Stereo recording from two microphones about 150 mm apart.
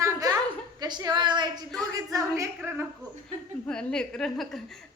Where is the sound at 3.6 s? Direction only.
5° left (ahead or behind).